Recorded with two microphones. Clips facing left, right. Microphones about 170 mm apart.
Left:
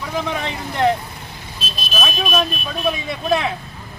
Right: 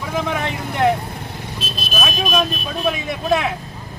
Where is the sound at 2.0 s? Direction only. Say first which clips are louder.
Right 1 dB; centre (ahead or behind).